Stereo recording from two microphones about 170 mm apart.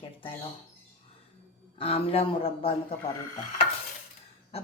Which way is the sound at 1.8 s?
35° left (ahead or behind).